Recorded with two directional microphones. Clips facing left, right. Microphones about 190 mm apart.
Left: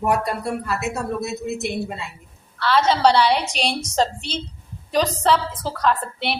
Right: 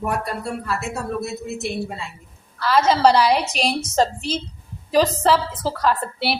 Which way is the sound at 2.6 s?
10° right (ahead or behind).